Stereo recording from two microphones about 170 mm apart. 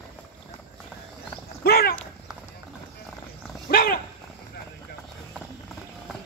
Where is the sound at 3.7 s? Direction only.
60° left (ahead or behind).